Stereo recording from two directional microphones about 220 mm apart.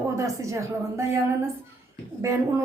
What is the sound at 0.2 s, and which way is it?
Speech, 15° right (ahead or behind).